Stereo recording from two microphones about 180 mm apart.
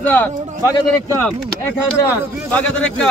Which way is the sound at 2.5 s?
5° left (ahead or behind).